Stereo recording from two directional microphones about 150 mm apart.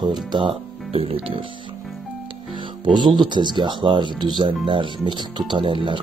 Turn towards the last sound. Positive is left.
turn(degrees=-35)  # may be behind; listen again after turning